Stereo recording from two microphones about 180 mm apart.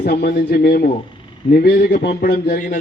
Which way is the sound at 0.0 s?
60° left (ahead or behind).